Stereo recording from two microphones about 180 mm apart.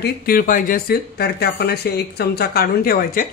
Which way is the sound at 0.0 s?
50° left (ahead or behind).